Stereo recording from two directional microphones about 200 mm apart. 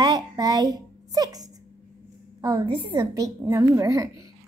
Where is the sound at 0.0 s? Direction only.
20° right (ahead or behind).